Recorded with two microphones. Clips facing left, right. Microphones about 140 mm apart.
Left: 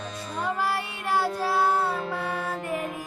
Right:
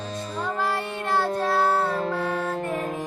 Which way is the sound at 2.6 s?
40° right (ahead or behind).